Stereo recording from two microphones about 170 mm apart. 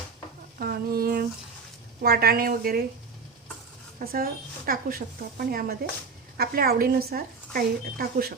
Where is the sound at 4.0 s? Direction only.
55° right (ahead or behind).